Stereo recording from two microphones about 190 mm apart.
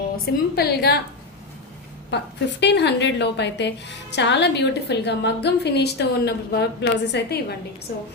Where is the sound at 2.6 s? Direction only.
65° left (ahead or behind).